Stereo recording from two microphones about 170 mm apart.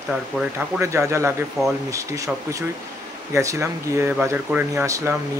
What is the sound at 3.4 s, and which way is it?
Speech, 15° right (ahead or behind).